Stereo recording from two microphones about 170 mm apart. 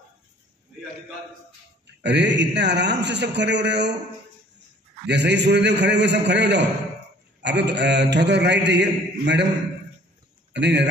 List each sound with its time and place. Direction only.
2.0 s a man's voice: 90° right
5.0 s a man's voice: 90° right
10.5 s speech: 90° right